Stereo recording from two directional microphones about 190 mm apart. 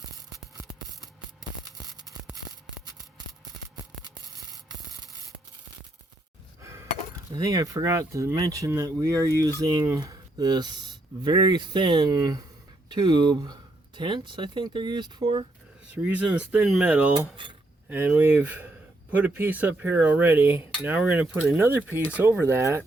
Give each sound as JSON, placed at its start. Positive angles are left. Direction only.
{"t": 4.0, "sound": "hum", "side_deg": -20}
{"t": 6.6, "sound": "a sound", "side_deg": -15}
{"t": 7.3, "sound": "speech", "side_deg": -20}
{"t": 16.0, "sound": "speech", "side_deg": -5}